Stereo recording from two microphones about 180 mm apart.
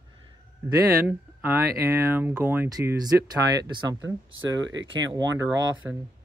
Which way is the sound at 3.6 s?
20° right (ahead or behind).